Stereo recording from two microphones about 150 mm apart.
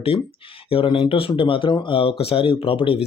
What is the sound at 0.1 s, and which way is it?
Speech, 40° left (ahead or behind).